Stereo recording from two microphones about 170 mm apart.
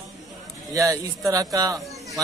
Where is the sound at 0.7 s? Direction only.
20° right (ahead or behind).